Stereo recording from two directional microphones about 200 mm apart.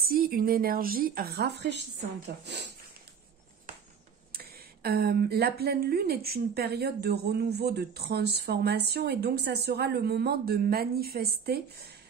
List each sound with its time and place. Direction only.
0.0 s speech: 50° right (ahead or behind)
4.3 s speech: 50° right (ahead or behind)